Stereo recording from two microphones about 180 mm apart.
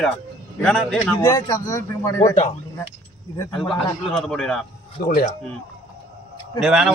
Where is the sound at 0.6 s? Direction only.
5° left (ahead or behind).